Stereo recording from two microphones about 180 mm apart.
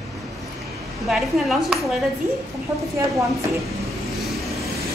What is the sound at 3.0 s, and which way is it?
Speech, 15° right (ahead or behind).